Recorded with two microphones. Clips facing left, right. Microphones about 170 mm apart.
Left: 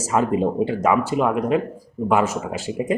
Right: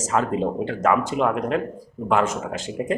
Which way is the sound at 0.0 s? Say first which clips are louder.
Left 3 dB; 10° left (ahead or behind).